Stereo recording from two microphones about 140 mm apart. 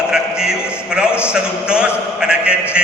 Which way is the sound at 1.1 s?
15° left (ahead or behind).